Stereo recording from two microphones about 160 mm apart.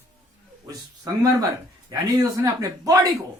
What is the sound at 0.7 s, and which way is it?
Speech, 25° right (ahead or behind).